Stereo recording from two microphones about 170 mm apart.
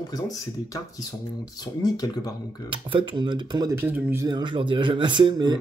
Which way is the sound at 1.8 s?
25° left (ahead or behind).